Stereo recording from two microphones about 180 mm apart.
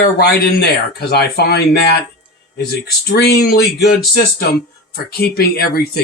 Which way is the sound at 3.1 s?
60° left (ahead or behind).